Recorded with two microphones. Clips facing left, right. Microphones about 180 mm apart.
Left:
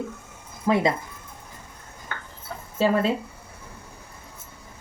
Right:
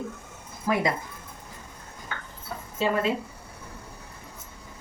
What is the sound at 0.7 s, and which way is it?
Speech, 25° left (ahead or behind).